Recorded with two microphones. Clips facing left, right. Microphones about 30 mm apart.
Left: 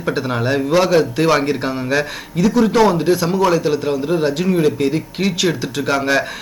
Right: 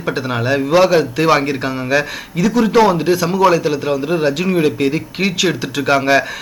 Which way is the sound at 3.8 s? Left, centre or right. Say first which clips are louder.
Right 1 dB; centre.